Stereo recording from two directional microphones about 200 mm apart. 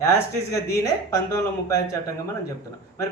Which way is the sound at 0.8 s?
15° left (ahead or behind).